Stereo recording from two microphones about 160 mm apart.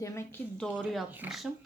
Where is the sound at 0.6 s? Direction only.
5° left (ahead or behind).